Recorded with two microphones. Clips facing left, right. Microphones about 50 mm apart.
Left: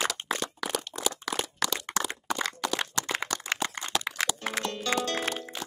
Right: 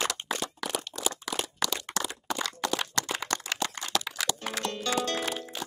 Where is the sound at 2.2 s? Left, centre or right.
Left.